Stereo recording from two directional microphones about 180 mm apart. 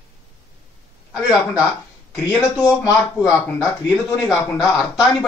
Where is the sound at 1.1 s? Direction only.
5° right (ahead or behind).